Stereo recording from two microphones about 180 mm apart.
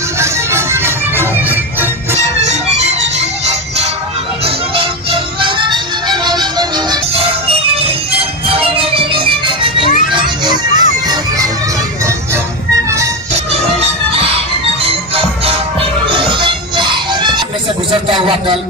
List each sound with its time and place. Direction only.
0.2 s music: 15° right (ahead or behind)
2.1 s music: 40° right (ahead or behind)
5.4 s music: 25° right (ahead or behind)
13.3 s music: 35° right (ahead or behind)
18.0 s a sound: 30° right (ahead or behind)